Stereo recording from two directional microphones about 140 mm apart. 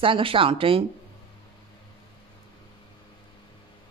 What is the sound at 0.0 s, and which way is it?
Speech, 40° right (ahead or behind).